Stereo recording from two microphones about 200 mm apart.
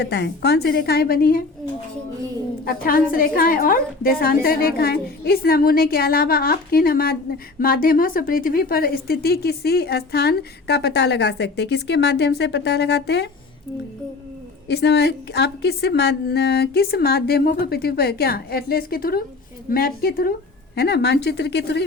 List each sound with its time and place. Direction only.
0.0 s a woman's voice: 55° left (ahead or behind)
2.6 s a woman's voice: 45° left (ahead or behind)
14.7 s a woman's voice: 55° left (ahead or behind)